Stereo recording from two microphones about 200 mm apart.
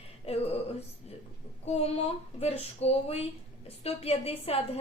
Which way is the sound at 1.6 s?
30° left (ahead or behind).